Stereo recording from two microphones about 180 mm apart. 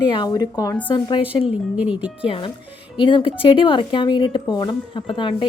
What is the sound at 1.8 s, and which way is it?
Speech, 5° right (ahead or behind).